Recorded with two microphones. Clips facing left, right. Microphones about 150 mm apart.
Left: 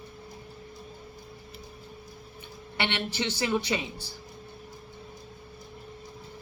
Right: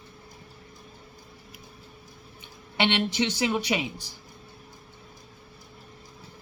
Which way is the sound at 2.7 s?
15° right (ahead or behind).